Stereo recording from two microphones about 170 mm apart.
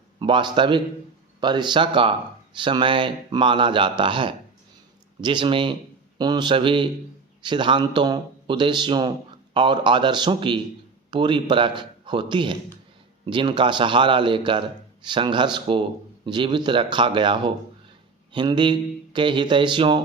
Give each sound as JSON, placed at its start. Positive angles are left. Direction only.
{"t": 0.2, "sound": "speech", "side_deg": -30}